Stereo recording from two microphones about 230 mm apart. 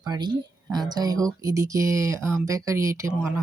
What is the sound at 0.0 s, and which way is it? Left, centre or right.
Speech, centre.